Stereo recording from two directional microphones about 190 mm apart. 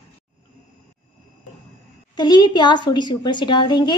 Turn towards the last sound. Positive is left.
turn(degrees=25)  # may be behind; listen again after turning